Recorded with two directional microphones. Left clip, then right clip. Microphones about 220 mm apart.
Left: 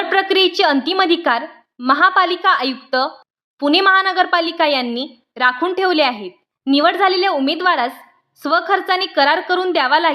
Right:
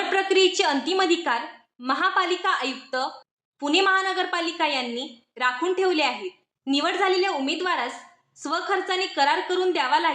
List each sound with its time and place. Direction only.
0.1 s a woman's voice: 45° left (ahead or behind)